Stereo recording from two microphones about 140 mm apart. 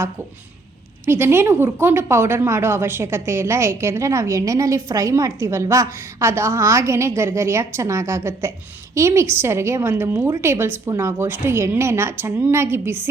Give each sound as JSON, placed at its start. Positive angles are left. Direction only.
{"t": 1.0, "sound": "a woman's voice", "side_deg": -15}